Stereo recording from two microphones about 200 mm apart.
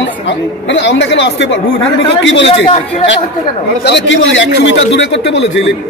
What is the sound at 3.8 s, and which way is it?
Speech, 60° left (ahead or behind).